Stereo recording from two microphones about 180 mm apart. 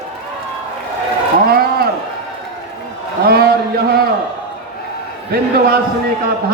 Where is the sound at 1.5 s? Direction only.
55° right (ahead or behind).